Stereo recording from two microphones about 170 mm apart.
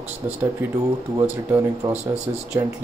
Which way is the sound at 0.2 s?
20° right (ahead or behind).